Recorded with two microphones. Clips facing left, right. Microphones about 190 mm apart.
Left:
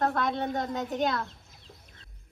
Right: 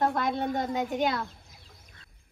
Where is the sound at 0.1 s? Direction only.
5° right (ahead or behind).